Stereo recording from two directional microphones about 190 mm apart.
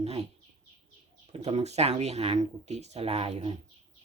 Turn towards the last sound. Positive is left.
turn(degrees=-35)  # may be behind; listen again after turning